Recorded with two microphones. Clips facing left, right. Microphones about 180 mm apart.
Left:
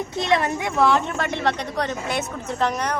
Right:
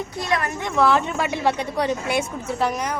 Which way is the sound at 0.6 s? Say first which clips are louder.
Even; centre (ahead or behind).